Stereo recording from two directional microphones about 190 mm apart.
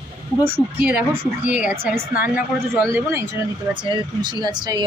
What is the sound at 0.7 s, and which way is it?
A woman's voice, 10° right (ahead or behind).